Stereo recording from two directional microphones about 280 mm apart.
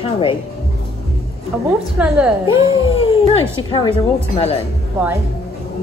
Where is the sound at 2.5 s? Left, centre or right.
Centre.